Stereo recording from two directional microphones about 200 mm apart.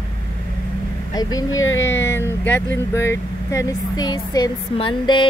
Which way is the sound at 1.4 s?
80° left.